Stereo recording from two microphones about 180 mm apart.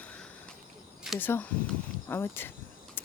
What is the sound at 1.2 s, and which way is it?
Speech, 10° left (ahead or behind).